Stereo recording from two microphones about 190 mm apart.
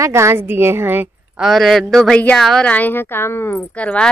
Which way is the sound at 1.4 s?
Centre (ahead or behind).